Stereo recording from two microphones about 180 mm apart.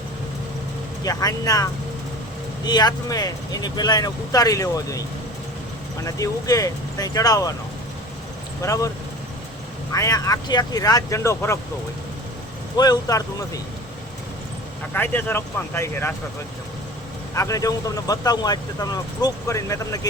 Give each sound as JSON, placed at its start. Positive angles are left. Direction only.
{"t": 1.0, "sound": "speech", "side_deg": 20}
{"t": 6.1, "sound": "speech", "side_deg": 20}
{"t": 8.6, "sound": "speech", "side_deg": 20}
{"t": 9.9, "sound": "speech", "side_deg": 20}
{"t": 12.7, "sound": "speech", "side_deg": 20}
{"t": 14.9, "sound": "speech", "side_deg": 10}
{"t": 17.3, "sound": "speech", "side_deg": 20}